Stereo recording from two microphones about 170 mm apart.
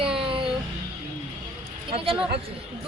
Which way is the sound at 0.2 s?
30° right (ahead or behind).